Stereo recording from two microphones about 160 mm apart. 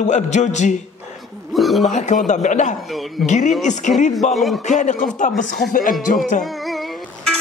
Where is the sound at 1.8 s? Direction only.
50° left (ahead or behind).